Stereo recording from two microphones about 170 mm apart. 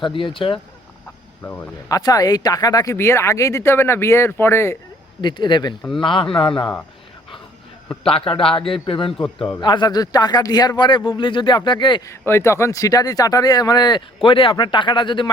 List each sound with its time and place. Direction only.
0.0 s a man's voice: 30° left (ahead or behind)
1.4 s speech: 15° left (ahead or behind)
5.2 s speech: 25° left (ahead or behind)
8.1 s a man's voice: 30° left (ahead or behind)
9.1 s speech: 5° left (ahead or behind)
9.6 s speech: 25° left (ahead or behind)